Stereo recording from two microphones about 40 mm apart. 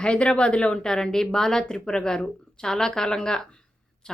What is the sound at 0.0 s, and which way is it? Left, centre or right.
Speech, left.